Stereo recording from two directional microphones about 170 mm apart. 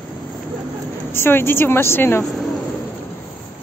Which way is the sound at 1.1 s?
15° left (ahead or behind).